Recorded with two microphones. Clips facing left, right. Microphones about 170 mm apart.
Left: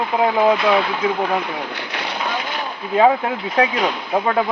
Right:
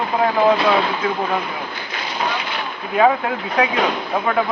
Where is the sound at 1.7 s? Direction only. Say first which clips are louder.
Left 2 dB; 75° left (ahead or behind).